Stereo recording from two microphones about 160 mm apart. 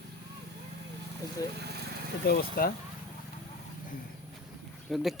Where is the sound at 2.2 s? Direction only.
75° left (ahead or behind).